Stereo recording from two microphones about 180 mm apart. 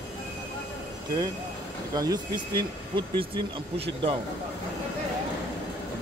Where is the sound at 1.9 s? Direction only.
20° right (ahead or behind).